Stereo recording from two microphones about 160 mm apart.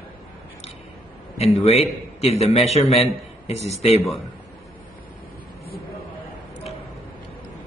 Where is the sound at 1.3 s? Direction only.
40° left (ahead or behind).